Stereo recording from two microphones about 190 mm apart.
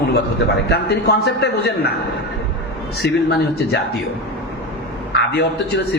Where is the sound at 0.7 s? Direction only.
60° left (ahead or behind).